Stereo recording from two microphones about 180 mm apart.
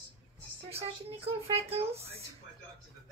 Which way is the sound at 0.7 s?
35° right (ahead or behind).